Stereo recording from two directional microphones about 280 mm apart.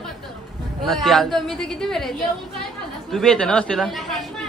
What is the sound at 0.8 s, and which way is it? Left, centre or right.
Speech, centre.